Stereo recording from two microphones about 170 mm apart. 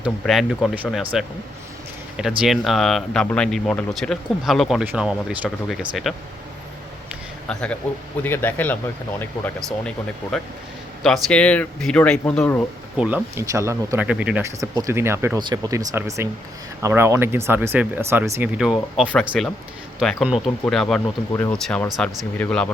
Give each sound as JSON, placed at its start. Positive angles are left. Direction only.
{"t": 0.0, "sound": "speech", "side_deg": 0}
{"t": 2.4, "sound": "speech", "side_deg": 0}
{"t": 7.4, "sound": "speech", "side_deg": 5}
{"t": 13.0, "sound": "speech", "side_deg": -5}
{"t": 13.3, "sound": "speech", "side_deg": -20}
{"t": 14.6, "sound": "speech", "side_deg": -20}